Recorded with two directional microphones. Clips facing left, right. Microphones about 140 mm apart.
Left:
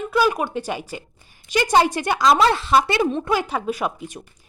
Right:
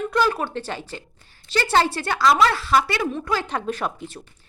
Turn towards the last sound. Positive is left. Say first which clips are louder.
# left 2 dB
turn(degrees=10)  # may be behind; listen again after turning